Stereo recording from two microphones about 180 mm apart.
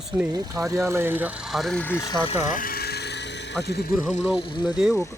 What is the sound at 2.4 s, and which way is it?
Vehicle, 50° left (ahead or behind).